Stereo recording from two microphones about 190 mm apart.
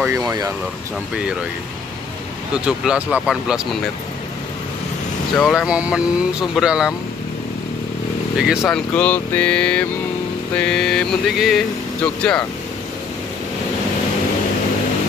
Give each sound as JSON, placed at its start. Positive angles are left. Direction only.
{"t": 0.0, "sound": "speech", "side_deg": -15}
{"t": 2.5, "sound": "speech", "side_deg": -5}
{"t": 5.4, "sound": "speech", "side_deg": 0}
{"t": 8.4, "sound": "speech", "side_deg": 0}